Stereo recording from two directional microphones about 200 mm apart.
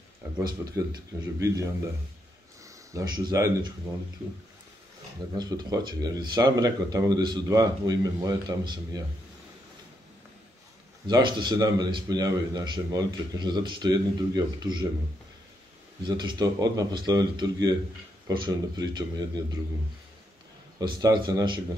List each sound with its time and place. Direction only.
0.4 s a man's voice: 20° right (ahead or behind)
2.6 s a sound: 15° right (ahead or behind)
5.3 s speech: 20° right (ahead or behind)
11.1 s speech: 20° right (ahead or behind)
16.0 s speech: 20° right (ahead or behind)
20.8 s speech: 20° right (ahead or behind)